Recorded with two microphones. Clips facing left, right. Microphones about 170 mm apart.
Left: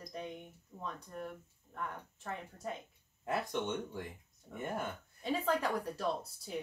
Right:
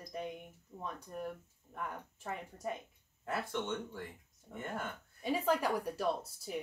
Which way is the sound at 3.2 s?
15° left (ahead or behind).